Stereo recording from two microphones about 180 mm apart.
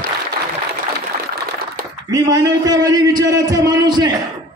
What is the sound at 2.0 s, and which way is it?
A man's voice, 20° right (ahead or behind).